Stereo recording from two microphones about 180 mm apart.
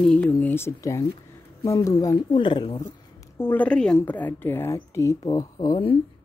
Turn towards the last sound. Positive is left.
turn(degrees=20)  # may be behind; listen again after turning